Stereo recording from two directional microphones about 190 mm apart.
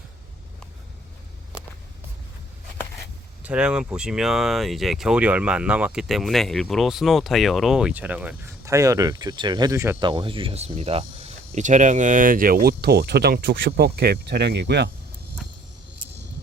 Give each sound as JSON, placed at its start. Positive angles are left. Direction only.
{"t": 3.4, "sound": "speech", "side_deg": -5}
{"t": 10.0, "sound": "speech", "side_deg": -25}